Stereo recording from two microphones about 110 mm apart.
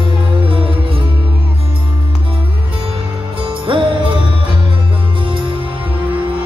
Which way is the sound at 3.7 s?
50° right (ahead or behind).